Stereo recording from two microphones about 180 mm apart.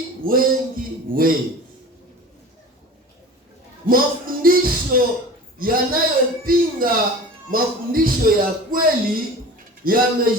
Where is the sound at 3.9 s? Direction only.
55° right (ahead or behind).